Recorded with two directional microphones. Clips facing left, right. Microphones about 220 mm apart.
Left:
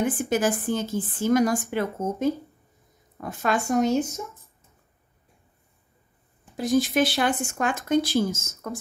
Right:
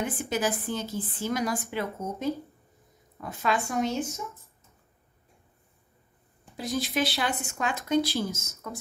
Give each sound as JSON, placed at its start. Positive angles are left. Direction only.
{"t": 0.0, "sound": "a woman's voice", "side_deg": 50}
{"t": 6.5, "sound": "a woman's voice", "side_deg": 50}